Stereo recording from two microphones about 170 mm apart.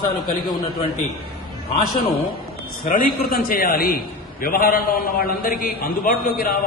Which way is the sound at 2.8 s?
50° left (ahead or behind).